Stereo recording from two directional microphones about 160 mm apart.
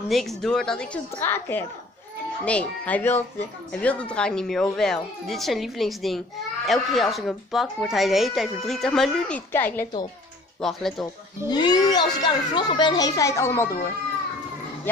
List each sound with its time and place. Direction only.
0.1 s speech: centre (ahead or behind)
9.5 s speech: 15° left (ahead or behind)
10.6 s speech: centre (ahead or behind)
11.4 s a child's voice: 25° left (ahead or behind)